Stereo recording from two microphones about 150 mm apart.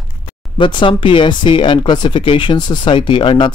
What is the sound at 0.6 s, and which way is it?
Speech, 35° left (ahead or behind).